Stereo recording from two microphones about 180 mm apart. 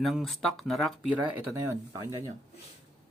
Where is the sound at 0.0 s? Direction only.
Centre (ahead or behind); by 2.0 s 15° right (ahead or behind).